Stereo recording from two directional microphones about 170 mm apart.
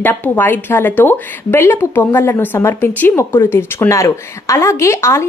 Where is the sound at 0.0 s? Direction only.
10° left (ahead or behind).